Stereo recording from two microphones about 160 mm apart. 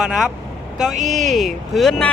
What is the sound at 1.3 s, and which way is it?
Speech, centre (ahead or behind).